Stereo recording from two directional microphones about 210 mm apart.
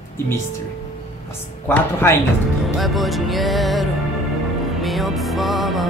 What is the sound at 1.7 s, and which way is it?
Speech, 10° left (ahead or behind).